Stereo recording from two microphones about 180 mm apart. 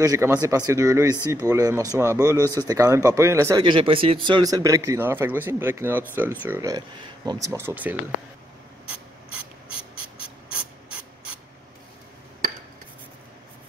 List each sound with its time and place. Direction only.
0.0 s speech: 15° right (ahead or behind)
3.6 s speech: 25° right (ahead or behind); by 7.9 s 10° right (ahead or behind)
9.3 s ratchet: 5° right (ahead or behind)